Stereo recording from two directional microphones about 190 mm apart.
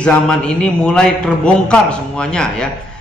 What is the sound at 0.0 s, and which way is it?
A man's voice, 5° left (ahead or behind).